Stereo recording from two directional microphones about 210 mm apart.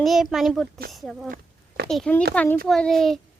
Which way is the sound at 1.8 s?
5° left (ahead or behind).